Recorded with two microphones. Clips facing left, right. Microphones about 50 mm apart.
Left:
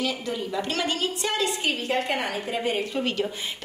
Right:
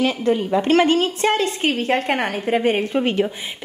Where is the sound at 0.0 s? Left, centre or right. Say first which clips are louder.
Right 9 dB; right.